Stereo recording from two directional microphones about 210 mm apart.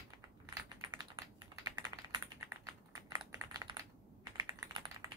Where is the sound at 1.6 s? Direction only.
20° right (ahead or behind).